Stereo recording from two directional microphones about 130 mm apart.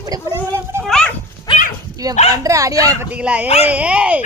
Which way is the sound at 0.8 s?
5° left (ahead or behind).